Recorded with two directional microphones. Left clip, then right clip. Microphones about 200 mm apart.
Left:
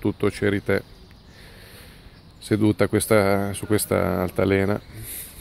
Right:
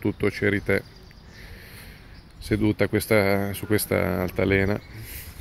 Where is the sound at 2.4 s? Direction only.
20° left (ahead or behind).